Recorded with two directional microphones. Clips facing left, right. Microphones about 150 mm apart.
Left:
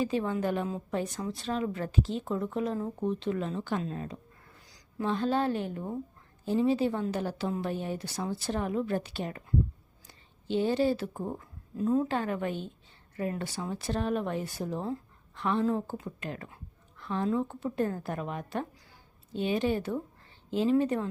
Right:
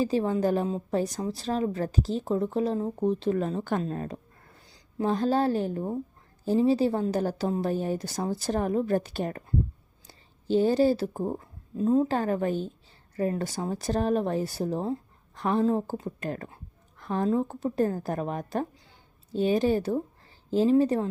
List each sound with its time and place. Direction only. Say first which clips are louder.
0.0 s a woman's voice: right 4 dB; 35° right (ahead or behind)
4.7 s a woman's voice: right 4 dB; 35° right (ahead or behind)